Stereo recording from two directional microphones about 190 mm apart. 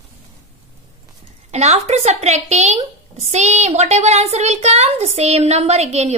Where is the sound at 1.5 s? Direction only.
35° right (ahead or behind).